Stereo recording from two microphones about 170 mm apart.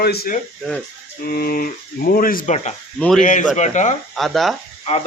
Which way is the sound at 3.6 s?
45° left (ahead or behind).